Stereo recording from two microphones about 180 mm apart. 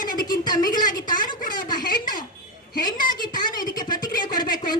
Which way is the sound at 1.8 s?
50° left (ahead or behind).